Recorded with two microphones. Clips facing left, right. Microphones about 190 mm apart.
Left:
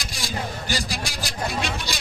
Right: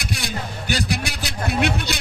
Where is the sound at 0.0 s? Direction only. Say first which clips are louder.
Right 2 dB; 60° right (ahead or behind).